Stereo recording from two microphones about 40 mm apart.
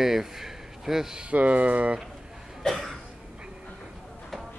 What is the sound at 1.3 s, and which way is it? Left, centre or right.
Speech, right.